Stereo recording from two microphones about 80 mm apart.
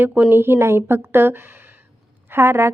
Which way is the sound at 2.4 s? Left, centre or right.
Right.